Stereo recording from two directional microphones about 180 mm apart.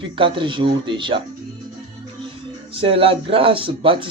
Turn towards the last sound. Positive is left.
turn(degrees=-30)  # may be behind; listen again after turning